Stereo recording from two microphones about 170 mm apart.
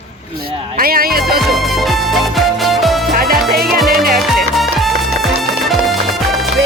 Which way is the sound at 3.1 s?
60° right (ahead or behind).